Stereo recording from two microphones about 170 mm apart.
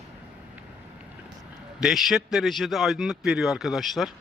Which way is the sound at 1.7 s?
Centre (ahead or behind).